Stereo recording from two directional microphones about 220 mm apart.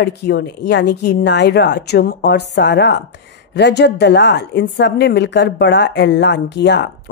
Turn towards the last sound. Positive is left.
turn(degrees=50)  # may be behind; listen again after turning